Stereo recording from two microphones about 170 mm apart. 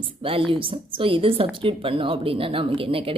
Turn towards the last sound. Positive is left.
turn(degrees=-35)  # may be behind; listen again after turning